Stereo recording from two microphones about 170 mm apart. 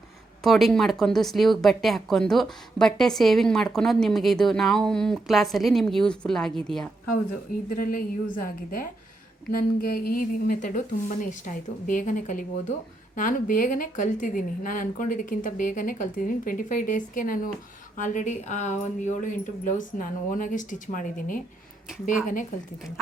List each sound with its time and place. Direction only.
0.4 s speech: centre (ahead or behind)
7.7 s a woman's voice: 55° left (ahead or behind)